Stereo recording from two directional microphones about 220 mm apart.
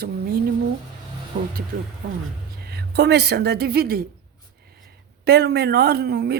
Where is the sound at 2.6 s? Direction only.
50° right (ahead or behind).